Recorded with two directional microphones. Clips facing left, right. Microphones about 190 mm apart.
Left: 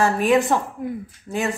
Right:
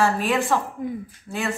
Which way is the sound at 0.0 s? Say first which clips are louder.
Left 4 dB; 20° left (ahead or behind).